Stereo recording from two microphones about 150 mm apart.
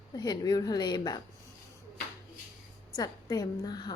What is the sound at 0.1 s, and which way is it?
Speech, 25° left (ahead or behind).